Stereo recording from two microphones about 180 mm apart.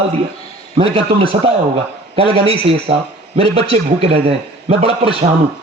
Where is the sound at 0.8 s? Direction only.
30° right (ahead or behind).